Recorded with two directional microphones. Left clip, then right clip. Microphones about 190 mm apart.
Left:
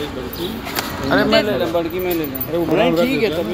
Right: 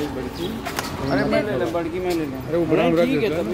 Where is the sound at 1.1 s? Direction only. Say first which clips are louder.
Left 6 dB; centre (ahead or behind).